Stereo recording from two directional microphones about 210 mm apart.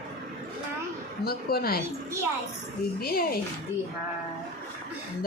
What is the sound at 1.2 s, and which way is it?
Speech, 45° left (ahead or behind).